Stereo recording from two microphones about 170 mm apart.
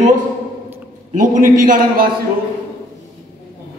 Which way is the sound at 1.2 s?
50° right (ahead or behind).